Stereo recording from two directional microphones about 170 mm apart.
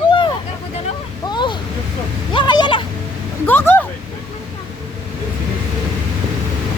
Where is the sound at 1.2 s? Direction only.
25° left (ahead or behind).